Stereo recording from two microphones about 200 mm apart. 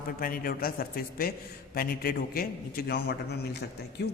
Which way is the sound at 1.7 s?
50° left (ahead or behind).